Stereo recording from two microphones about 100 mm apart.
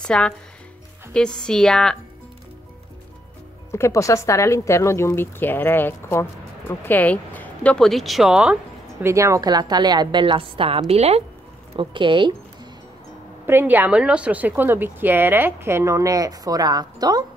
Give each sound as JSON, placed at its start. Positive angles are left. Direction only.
{"t": 0.0, "sound": "speech", "side_deg": 10}
{"t": 3.7, "sound": "speech", "side_deg": 30}
{"t": 9.0, "sound": "a woman's voice", "side_deg": -30}
{"t": 10.9, "sound": "speech", "side_deg": -90}
{"t": 11.7, "sound": "speech", "side_deg": -55}
{"t": 13.5, "sound": "a woman's voice", "side_deg": -20}